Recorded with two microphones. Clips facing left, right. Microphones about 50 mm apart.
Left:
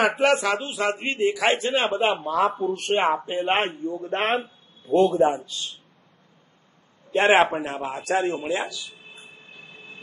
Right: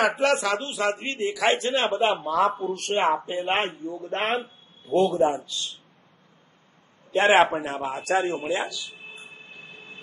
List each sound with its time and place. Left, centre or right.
0.2 s a man's voice: centre
2.2 s speech: centre
3.3 s a man's voice: left
7.1 s a man's voice: centre
8.9 s a sound: right